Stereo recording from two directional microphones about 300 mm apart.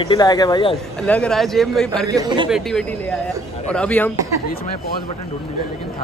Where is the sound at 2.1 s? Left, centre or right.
Centre.